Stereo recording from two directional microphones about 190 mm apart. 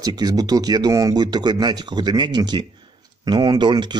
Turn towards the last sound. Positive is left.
turn(degrees=-25)  # may be behind; listen again after turning